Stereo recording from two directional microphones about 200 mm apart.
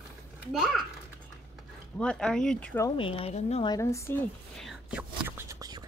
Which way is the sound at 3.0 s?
25° left (ahead or behind).